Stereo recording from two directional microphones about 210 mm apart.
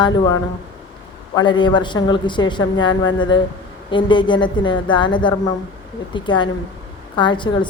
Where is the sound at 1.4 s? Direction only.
20° left (ahead or behind).